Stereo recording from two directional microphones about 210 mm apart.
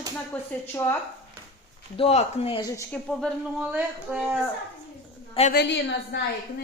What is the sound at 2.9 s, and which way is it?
Speech, 5° left (ahead or behind).